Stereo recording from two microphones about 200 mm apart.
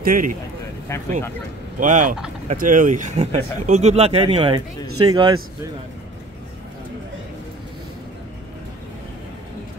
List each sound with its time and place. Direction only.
0.0 s speech: 45° right (ahead or behind)
1.8 s speech: 40° right (ahead or behind); by 5.4 s 20° right (ahead or behind)